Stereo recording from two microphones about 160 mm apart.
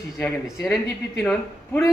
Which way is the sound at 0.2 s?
5° left (ahead or behind).